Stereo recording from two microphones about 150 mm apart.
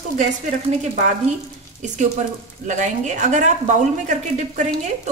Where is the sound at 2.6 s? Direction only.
55° right (ahead or behind).